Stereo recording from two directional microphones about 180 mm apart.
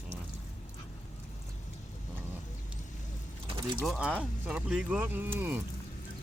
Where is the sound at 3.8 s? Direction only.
5° right (ahead or behind).